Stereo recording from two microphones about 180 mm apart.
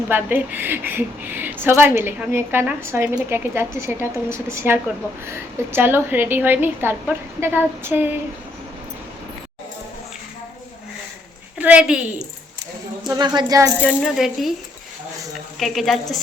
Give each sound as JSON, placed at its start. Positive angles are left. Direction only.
{"t": 0.1, "sound": "a woman's voice", "side_deg": -10}
{"t": 11.5, "sound": "a woman's voice", "side_deg": -10}
{"t": 13.1, "sound": "speech", "side_deg": -25}
{"t": 13.8, "sound": "speech", "side_deg": 0}
{"t": 15.5, "sound": "speech", "side_deg": 0}